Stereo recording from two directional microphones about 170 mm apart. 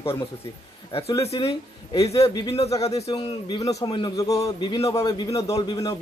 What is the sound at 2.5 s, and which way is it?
Speech, 35° left (ahead or behind).